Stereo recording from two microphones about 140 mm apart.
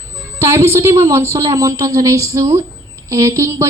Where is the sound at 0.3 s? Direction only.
20° right (ahead or behind).